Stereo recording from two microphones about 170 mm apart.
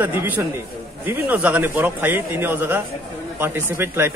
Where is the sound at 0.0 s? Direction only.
10° right (ahead or behind).